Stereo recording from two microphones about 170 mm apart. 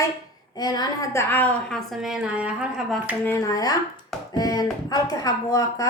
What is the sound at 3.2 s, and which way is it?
Chopping, 15° left (ahead or behind).